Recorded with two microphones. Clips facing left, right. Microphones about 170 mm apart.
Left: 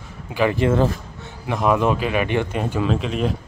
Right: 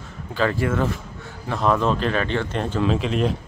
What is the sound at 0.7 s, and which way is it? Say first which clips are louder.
Speech: left 4 dB; 30° left (ahead or behind).